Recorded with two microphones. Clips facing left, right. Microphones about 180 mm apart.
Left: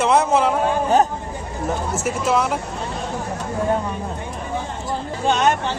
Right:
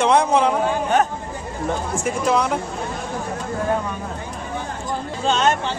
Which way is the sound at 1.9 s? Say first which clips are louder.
Right 1 dB; 5° left (ahead or behind).